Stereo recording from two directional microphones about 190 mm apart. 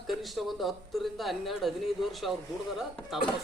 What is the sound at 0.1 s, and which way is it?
Speech, centre (ahead or behind).